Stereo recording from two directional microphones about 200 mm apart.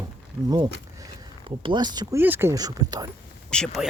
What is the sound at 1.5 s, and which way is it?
Speech, 25° right (ahead or behind).